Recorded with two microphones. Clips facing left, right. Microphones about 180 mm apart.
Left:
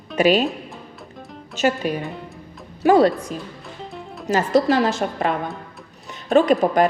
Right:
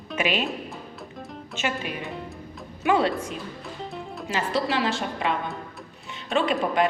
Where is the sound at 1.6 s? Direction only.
40° left (ahead or behind).